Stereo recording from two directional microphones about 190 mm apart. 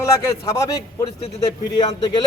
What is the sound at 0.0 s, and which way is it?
Speech, 15° left (ahead or behind).